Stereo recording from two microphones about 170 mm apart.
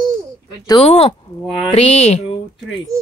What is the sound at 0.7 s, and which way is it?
Speech, 30° left (ahead or behind).